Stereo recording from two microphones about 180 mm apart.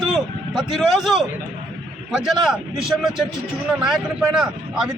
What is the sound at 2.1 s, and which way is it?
A man's voice, centre (ahead or behind).